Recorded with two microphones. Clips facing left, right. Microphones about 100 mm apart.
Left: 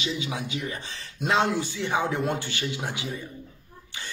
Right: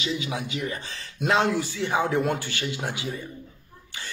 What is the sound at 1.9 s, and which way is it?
Speech, 25° right (ahead or behind).